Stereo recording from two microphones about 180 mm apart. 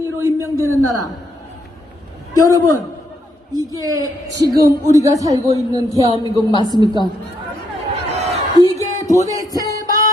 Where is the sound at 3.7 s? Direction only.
20° right (ahead or behind).